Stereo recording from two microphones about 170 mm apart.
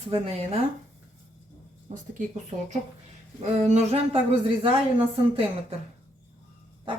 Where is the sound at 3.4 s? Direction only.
40° right (ahead or behind).